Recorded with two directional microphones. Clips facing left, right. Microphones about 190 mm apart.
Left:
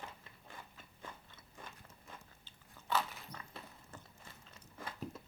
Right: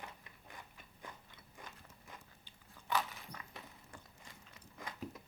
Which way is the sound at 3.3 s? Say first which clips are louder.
Left 1 dB; 15° right (ahead or behind).